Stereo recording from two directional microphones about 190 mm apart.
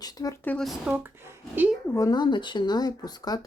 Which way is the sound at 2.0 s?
20° left (ahead or behind).